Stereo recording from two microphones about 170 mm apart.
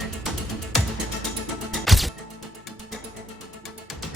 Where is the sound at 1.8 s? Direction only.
Centre (ahead or behind).